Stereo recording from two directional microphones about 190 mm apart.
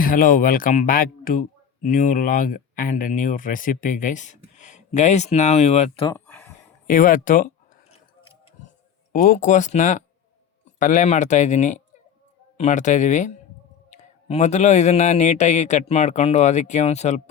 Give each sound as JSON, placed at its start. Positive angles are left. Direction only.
{"t": 0.0, "sound": "speech", "side_deg": 50}
{"t": 6.1, "sound": "a sound", "side_deg": 10}
{"t": 6.8, "sound": "speech", "side_deg": 45}
{"t": 9.1, "sound": "a man's voice", "side_deg": 45}